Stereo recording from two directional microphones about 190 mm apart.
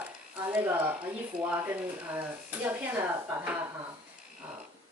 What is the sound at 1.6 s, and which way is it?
Speech, 10° right (ahead or behind).